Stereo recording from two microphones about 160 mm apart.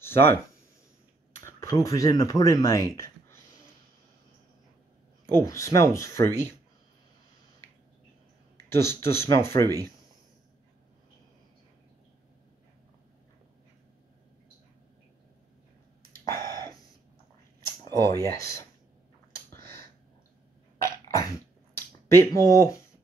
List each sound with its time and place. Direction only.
0.0 s speech: 15° left (ahead or behind)
1.4 s speech: 20° left (ahead or behind)
5.3 s speech: 20° left (ahead or behind)
8.6 s speech: 15° left (ahead or behind)
17.9 s speech: 20° left (ahead or behind)
19.3 s a sound: 15° left (ahead or behind)
20.8 s a sound: 20° left (ahead or behind)
21.7 s speech: 15° left (ahead or behind)